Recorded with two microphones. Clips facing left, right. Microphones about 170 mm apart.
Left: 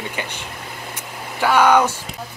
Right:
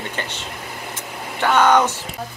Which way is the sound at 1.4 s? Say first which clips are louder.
Left 1 dB; 10° left (ahead or behind).